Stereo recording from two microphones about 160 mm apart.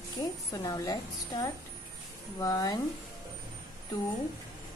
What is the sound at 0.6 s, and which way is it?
A woman's voice, 25° left (ahead or behind).